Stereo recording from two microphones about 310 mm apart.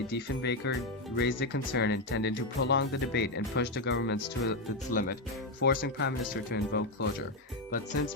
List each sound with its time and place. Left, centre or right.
0.4 s speech: left